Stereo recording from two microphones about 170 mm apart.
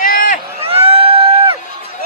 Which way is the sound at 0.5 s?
35° right (ahead or behind).